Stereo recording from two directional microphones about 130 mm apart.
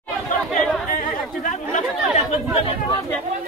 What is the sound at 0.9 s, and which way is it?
Chatter, 80° left.